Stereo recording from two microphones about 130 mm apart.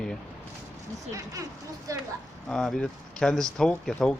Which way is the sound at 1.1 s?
25° right (ahead or behind).